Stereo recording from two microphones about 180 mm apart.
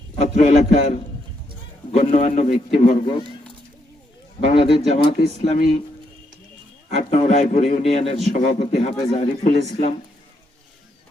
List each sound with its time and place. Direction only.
0.2 s a man's voice: 40° left (ahead or behind)
4.4 s a man's voice: 35° left (ahead or behind)
5.5 s speech: 45° left (ahead or behind)
6.9 s a man's voice: 35° left (ahead or behind)